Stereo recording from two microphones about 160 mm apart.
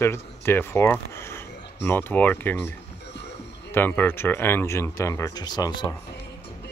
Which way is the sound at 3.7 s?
10° left (ahead or behind).